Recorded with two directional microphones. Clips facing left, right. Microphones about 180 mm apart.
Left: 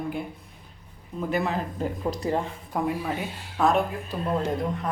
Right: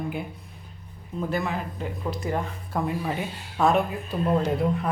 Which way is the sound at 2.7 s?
10° left (ahead or behind).